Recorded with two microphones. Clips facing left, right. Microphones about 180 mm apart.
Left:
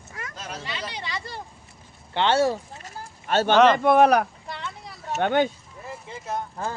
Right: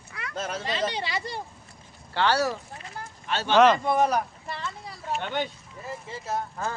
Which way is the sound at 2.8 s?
45° left (ahead or behind).